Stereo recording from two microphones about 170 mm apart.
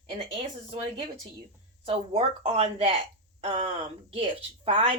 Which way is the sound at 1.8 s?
35° right (ahead or behind).